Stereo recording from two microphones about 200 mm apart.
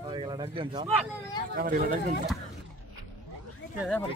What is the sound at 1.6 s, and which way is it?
Speech, 45° right (ahead or behind).